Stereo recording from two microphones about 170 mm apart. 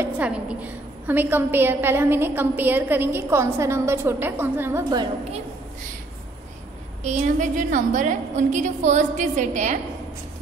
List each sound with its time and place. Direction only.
0.0 s a woman's voice: 5° right (ahead or behind)
7.0 s a woman's voice: 40° right (ahead or behind)